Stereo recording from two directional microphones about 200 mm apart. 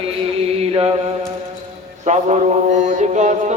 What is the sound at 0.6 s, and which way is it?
Mantra, 30° right (ahead or behind).